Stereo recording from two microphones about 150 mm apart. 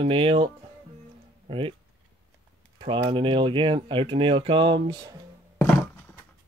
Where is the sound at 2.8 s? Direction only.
35° right (ahead or behind).